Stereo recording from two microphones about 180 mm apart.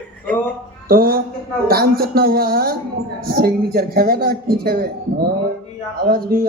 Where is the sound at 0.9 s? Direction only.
55° right (ahead or behind).